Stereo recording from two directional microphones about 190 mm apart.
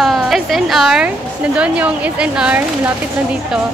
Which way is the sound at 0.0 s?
Centre (ahead or behind).